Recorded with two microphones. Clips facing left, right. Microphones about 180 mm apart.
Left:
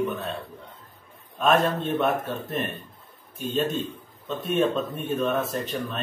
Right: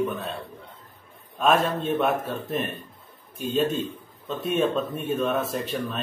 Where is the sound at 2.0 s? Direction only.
Centre (ahead or behind).